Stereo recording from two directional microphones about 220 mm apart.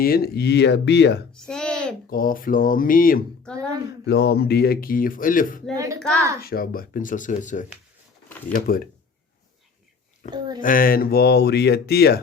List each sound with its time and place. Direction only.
0.0 s speech: 45° left (ahead or behind)
1.3 s a sound: 5° left (ahead or behind)
2.0 s speech: 40° left (ahead or behind)
3.4 s speech: 5° left (ahead or behind)
4.0 s speech: 50° left (ahead or behind)
5.7 s speech: 15° right (ahead or behind)
6.4 s speech: 45° left (ahead or behind)
10.2 s speech: 35° left (ahead or behind)